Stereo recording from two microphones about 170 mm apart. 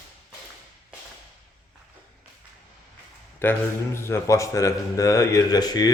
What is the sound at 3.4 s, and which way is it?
A man's voice, 15° left (ahead or behind).